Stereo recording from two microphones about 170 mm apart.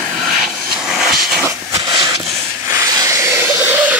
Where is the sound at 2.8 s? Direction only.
20° right (ahead or behind).